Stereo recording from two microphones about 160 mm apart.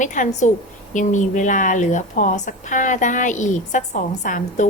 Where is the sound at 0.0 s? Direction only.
50° left (ahead or behind).